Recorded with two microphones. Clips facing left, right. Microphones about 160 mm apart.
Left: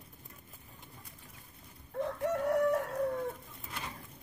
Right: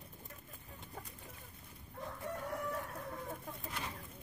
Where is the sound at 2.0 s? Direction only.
80° left.